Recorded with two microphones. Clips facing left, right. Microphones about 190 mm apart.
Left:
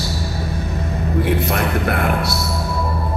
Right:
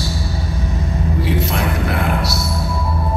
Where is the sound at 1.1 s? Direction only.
55° left (ahead or behind).